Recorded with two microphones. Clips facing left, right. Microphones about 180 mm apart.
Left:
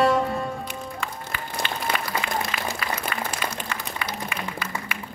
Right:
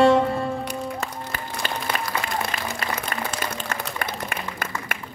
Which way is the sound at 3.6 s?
50° right (ahead or behind).